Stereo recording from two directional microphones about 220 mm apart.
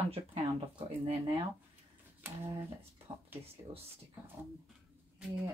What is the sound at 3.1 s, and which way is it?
Speech, 25° right (ahead or behind).